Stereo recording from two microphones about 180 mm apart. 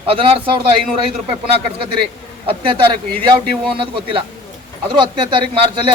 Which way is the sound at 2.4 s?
30° right (ahead or behind).